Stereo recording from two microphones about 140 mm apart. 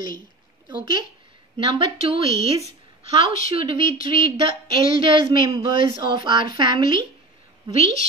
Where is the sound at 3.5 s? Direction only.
40° right (ahead or behind).